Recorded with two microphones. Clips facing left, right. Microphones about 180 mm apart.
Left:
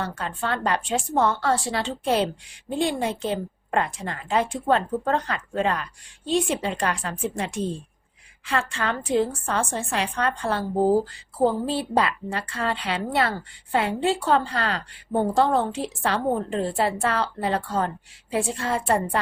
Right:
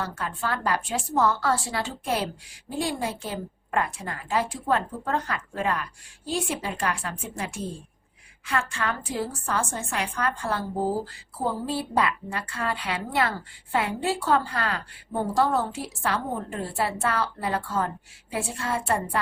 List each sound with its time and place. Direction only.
0.0 s a woman's voice: 30° left (ahead or behind)
11.6 s a woman's voice: 25° left (ahead or behind)